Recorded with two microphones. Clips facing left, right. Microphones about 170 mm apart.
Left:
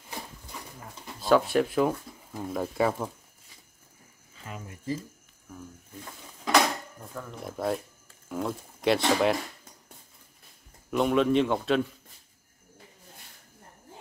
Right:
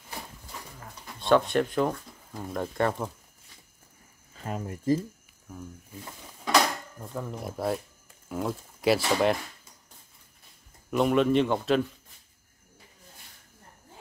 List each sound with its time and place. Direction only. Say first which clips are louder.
1.2 s speech: even; 5° left (ahead or behind)
4.4 s speech: right 7 dB; 40° right (ahead or behind)
6.0 s a sound: left 1 dB; centre (ahead or behind)
7.2 s speech: left 1 dB; 5° right (ahead or behind)
10.9 s speech: right 1 dB; centre (ahead or behind)